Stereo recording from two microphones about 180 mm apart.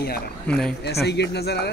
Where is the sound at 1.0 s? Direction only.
65° left (ahead or behind).